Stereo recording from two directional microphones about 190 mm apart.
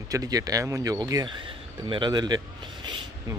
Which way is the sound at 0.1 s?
20° right (ahead or behind).